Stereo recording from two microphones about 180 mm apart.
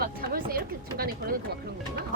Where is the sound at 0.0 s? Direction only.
55° right (ahead or behind).